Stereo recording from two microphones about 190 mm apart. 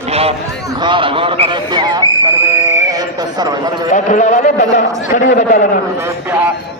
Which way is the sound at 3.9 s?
40° left (ahead or behind).